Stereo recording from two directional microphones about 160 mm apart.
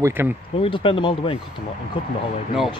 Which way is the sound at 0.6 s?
30° left (ahead or behind).